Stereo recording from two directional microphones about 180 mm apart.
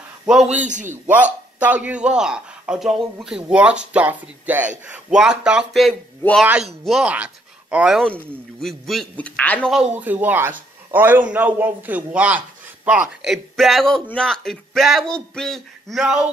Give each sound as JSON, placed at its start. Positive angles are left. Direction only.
{"t": 0.3, "sound": "a man's voice", "side_deg": -5}
{"t": 0.6, "sound": "a man's voice", "side_deg": -45}
{"t": 1.0, "sound": "a man's voice", "side_deg": -10}
{"t": 9.7, "sound": "a man's voice", "side_deg": -5}